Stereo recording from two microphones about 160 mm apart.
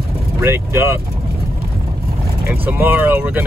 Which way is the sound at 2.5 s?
10° right (ahead or behind).